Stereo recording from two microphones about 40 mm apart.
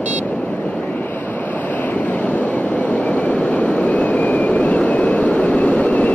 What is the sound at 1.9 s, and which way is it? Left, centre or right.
Train, left.